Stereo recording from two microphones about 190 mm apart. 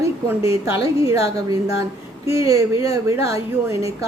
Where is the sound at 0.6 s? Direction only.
15° right (ahead or behind).